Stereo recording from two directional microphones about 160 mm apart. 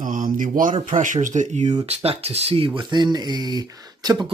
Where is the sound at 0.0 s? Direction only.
55° right (ahead or behind).